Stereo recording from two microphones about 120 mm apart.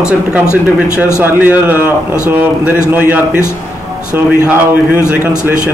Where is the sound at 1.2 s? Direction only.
15° right (ahead or behind).